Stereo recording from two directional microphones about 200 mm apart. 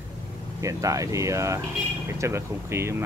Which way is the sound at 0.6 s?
15° right (ahead or behind).